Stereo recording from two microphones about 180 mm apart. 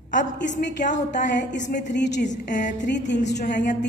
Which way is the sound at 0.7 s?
45° left (ahead or behind).